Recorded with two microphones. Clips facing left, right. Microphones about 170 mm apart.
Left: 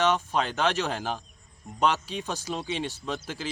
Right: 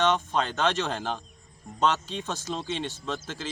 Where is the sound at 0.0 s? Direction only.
10° left (ahead or behind).